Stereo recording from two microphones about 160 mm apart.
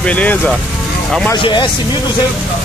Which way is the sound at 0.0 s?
10° left (ahead or behind).